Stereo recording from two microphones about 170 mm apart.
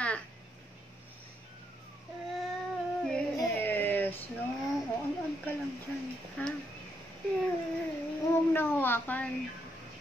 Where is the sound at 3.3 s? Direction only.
10° left (ahead or behind).